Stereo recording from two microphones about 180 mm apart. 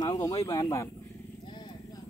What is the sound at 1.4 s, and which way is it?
Horse, 25° left (ahead or behind).